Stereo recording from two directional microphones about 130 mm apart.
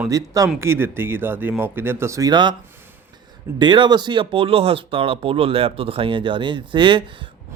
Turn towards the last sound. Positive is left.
turn(degrees=-40)  # may be behind; listen again after turning